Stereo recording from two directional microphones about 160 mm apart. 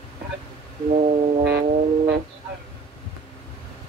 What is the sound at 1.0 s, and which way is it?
Foghorn, 45° right (ahead or behind).